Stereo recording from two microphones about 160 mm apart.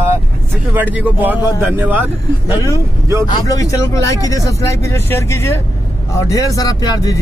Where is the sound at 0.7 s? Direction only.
10° right (ahead or behind).